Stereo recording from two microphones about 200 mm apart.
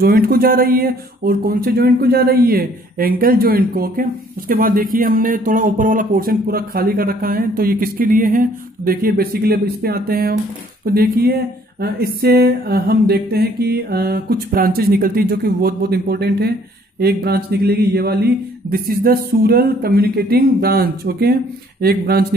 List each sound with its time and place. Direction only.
0.0 s speech: 50° right (ahead or behind)